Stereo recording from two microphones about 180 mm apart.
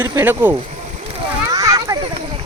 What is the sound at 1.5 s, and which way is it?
Children playing, 20° right (ahead or behind).